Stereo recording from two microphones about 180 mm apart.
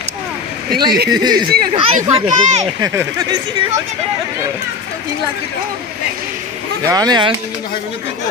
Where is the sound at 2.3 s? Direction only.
40° right (ahead or behind).